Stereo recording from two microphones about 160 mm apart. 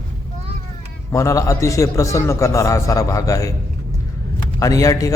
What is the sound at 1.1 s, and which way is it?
A man's voice, 20° left (ahead or behind).